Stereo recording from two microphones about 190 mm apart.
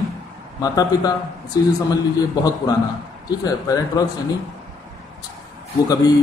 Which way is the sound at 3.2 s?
20° left (ahead or behind).